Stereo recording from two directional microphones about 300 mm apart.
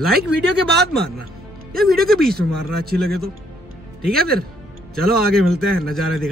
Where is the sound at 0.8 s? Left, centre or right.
Right.